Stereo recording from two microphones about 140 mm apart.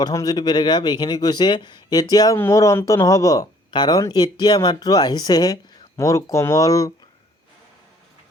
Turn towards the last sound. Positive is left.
turn(degrees=25)  # may be behind; listen again after turning